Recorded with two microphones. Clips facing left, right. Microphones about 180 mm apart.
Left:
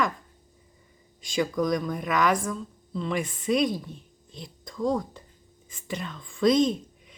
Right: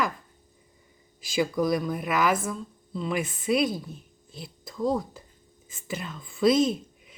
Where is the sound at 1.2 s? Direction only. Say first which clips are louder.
Right 1 dB; 5° right (ahead or behind).